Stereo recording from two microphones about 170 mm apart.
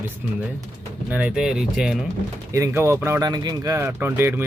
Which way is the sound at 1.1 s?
10° right (ahead or behind).